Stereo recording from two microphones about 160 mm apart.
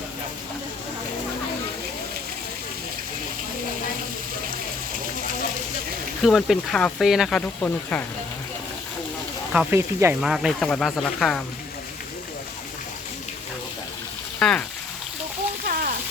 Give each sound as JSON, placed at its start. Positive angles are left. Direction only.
{"t": 6.2, "sound": "speech", "side_deg": 0}
{"t": 9.5, "sound": "speech", "side_deg": -5}
{"t": 9.7, "sound": "speech", "side_deg": -15}
{"t": 10.2, "sound": "speech", "side_deg": -5}
{"t": 14.3, "sound": "speech", "side_deg": 5}
{"t": 15.6, "sound": "a sound", "side_deg": -65}